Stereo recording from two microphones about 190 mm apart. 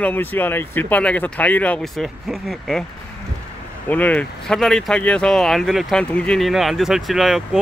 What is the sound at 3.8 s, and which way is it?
Speech, 10° left (ahead or behind).